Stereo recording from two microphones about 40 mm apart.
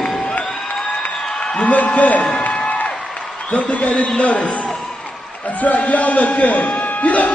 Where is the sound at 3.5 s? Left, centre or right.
Left.